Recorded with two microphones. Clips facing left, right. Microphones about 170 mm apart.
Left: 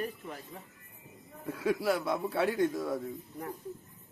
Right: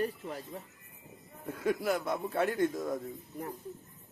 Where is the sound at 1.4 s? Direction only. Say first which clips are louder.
Left 1 dB; 5° left (ahead or behind).